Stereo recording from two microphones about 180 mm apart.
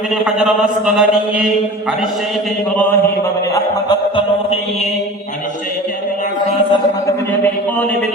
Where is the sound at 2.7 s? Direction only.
10° left (ahead or behind).